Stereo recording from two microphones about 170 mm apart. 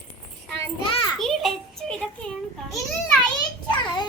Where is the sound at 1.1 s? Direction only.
Centre (ahead or behind).